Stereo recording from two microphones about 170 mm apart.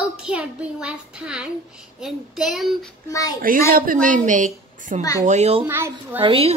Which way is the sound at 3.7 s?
55° right (ahead or behind).